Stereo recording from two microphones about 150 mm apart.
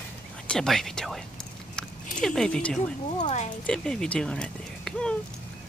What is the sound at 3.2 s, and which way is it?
Speech, 50° left (ahead or behind).